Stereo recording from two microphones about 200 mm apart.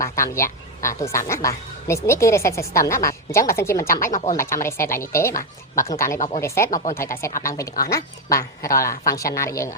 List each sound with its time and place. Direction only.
0.0 s speech: 15° left (ahead or behind)
6.1 s speech: 35° left (ahead or behind)
6.4 s speech: 15° left (ahead or behind)
6.7 s speech: 40° left (ahead or behind)
6.9 s speech: 15° left (ahead or behind)